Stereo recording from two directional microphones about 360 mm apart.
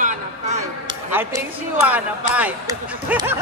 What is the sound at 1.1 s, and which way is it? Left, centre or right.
Speech, centre.